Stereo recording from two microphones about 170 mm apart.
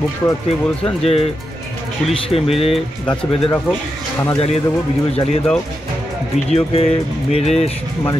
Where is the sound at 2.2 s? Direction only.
35° left (ahead or behind).